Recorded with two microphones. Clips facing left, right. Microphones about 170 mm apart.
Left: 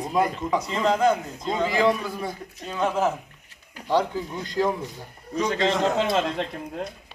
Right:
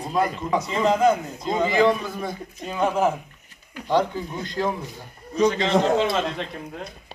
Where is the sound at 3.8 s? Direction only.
5° left (ahead or behind).